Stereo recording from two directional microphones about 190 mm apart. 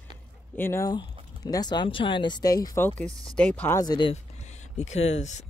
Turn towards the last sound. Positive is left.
turn(degrees=35)  # may be behind; listen again after turning